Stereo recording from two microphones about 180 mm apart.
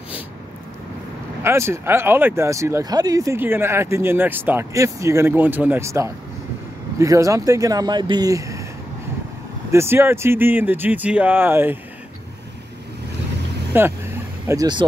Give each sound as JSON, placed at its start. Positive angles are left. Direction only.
{"t": 1.4, "sound": "speech", "side_deg": -15}
{"t": 9.7, "sound": "speech", "side_deg": -15}
{"t": 13.7, "sound": "speech", "side_deg": -10}
{"t": 14.5, "sound": "speech", "side_deg": -20}